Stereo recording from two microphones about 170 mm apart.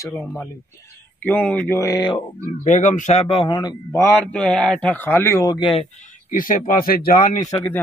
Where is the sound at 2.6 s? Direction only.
45° left (ahead or behind); by 4.0 s 25° left (ahead or behind).